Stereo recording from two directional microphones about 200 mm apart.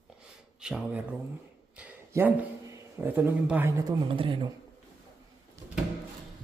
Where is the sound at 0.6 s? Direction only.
5° right (ahead or behind).